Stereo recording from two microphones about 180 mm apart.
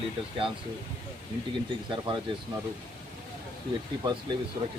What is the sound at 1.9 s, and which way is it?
Speech, 25° right (ahead or behind).